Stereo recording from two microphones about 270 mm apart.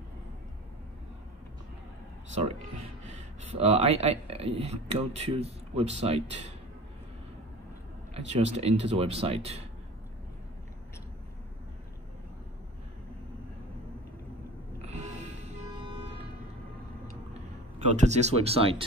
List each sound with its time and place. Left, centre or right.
3.1 s speech: right
8.1 s speech: right
14.8 s music: right
17.9 s speech: right